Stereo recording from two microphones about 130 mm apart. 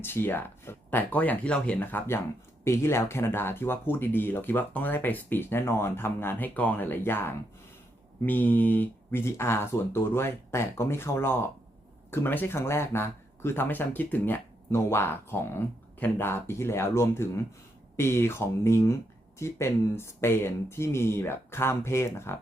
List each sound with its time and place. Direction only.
0.0 s speech: 15° left (ahead or behind)